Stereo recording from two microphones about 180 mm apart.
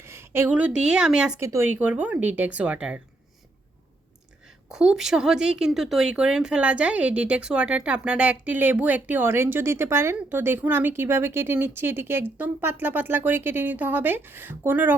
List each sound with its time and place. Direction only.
0.0 s a woman's voice: 15° right (ahead or behind)
1.4 s a woman's voice: 15° right (ahead or behind)
4.4 s a woman's voice: 5° right (ahead or behind)